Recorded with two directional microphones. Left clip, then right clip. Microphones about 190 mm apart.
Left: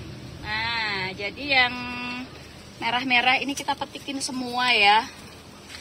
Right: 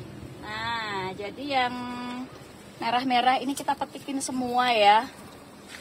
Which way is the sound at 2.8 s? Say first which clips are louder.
Left 2 dB; 25° right (ahead or behind).